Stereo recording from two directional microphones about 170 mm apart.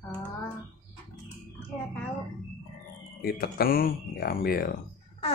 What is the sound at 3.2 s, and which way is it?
Speech, 65° left (ahead or behind).